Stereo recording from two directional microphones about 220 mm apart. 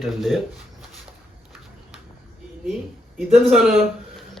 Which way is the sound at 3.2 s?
Centre (ahead or behind).